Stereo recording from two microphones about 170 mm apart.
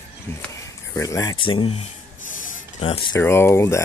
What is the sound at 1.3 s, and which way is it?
Speech, 30° left (ahead or behind).